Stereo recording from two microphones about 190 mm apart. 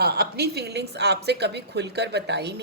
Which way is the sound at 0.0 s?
55° right (ahead or behind).